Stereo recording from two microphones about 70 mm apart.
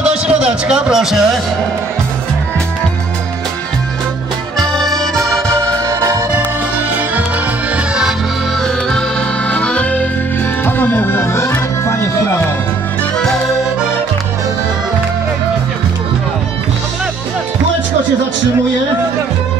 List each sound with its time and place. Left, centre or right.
0.0 s a man's voice: centre
4.6 s accordion: centre
5.6 s music: right
6.9 s music: right
7.7 s accordion: centre
8.6 s accordion: centre
10.6 s music: left